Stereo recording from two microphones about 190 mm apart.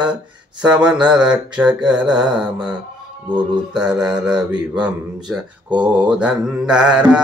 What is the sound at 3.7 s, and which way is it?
Speech, 5° right (ahead or behind).